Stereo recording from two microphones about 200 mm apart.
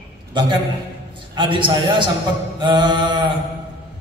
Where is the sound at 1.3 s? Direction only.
25° right (ahead or behind).